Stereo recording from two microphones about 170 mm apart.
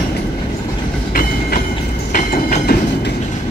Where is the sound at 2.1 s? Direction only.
50° left (ahead or behind).